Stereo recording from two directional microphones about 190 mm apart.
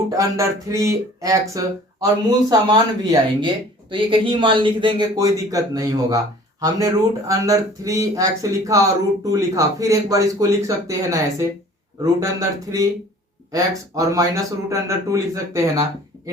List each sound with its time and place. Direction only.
0.1 s speech: 15° right (ahead or behind)